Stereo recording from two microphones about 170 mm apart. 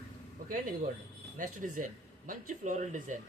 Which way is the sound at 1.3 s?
50° right (ahead or behind).